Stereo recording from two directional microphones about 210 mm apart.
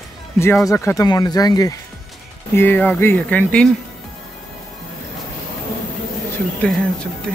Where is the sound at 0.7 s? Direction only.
15° left (ahead or behind).